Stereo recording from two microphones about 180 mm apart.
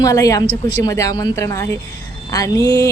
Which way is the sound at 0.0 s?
20° left (ahead or behind).